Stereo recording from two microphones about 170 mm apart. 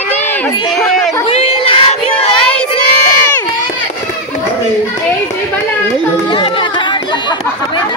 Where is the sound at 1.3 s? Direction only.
35° left (ahead or behind).